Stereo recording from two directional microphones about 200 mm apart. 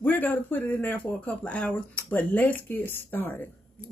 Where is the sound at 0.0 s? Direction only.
10° left (ahead or behind).